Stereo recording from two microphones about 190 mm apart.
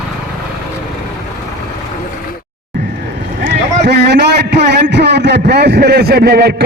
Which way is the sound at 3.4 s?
65° right (ahead or behind).